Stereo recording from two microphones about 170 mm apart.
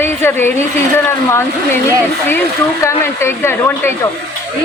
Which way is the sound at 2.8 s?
15° left (ahead or behind).